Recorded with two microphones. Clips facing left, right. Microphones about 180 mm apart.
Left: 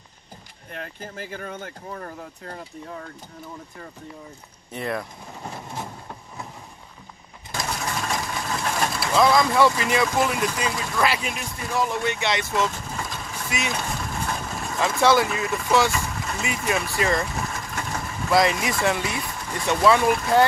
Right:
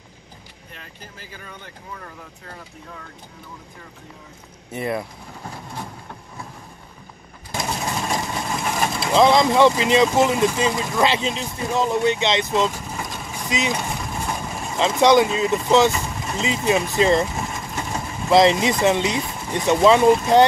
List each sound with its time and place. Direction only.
0.7 s speech: 55° left (ahead or behind)
4.7 s speech: 10° right (ahead or behind)
7.5 s speech: 20° right (ahead or behind)